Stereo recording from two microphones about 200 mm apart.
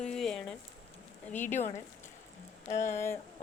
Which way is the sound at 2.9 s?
10° left (ahead or behind).